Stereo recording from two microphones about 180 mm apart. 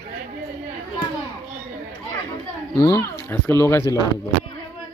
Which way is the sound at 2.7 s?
15° left (ahead or behind).